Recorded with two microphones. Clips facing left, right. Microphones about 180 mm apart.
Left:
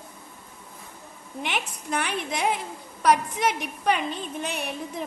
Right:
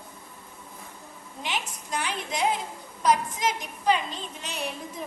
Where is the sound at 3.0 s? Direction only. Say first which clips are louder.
Left 2 dB; 60° left (ahead or behind).